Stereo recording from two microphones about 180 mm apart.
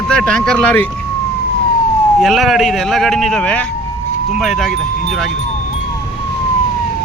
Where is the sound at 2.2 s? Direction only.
Centre (ahead or behind).